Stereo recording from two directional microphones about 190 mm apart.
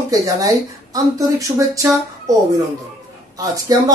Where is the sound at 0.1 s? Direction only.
15° right (ahead or behind).